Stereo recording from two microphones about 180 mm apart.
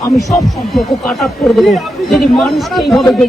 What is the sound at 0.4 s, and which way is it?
Speech, centre (ahead or behind).